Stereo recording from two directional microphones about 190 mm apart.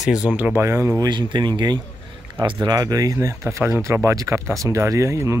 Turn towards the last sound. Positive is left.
turn(degrees=-15)  # may be behind; listen again after turning